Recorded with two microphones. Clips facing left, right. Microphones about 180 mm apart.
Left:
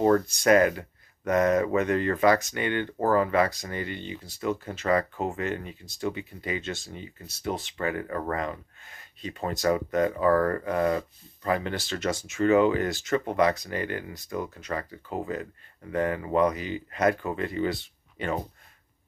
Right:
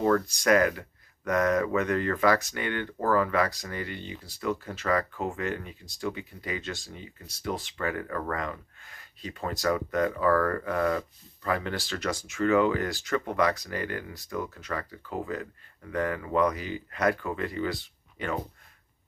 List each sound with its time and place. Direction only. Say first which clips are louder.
0.0 s speech: left 3 dB; 25° left (ahead or behind)